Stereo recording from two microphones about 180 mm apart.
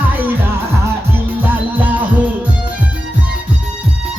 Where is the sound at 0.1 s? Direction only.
10° right (ahead or behind).